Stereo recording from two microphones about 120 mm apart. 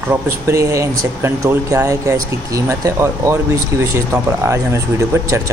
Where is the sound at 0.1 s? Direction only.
25° right (ahead or behind).